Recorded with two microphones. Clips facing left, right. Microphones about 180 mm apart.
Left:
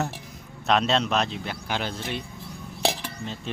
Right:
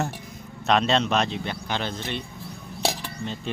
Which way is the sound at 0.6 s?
Centre (ahead or behind).